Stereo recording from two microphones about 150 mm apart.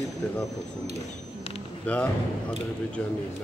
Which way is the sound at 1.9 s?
10° left (ahead or behind).